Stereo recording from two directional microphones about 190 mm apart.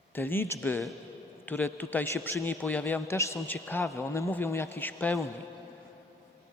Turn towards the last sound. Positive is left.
turn(degrees=10)  # may be behind; listen again after turning